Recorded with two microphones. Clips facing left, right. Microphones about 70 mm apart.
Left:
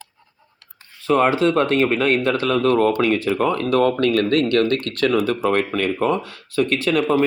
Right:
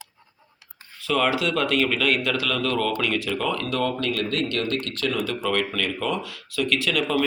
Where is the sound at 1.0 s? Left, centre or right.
Left.